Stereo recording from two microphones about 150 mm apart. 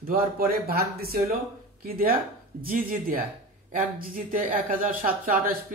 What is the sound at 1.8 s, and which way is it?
Speech, 80° right.